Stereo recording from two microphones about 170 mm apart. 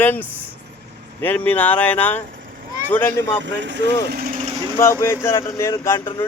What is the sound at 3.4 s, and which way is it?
Speech, 90° right.